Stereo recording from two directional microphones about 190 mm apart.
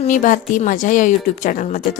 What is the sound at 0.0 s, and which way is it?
A woman's voice, 45° left (ahead or behind).